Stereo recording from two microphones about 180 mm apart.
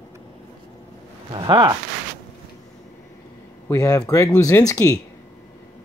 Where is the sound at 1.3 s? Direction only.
25° right (ahead or behind).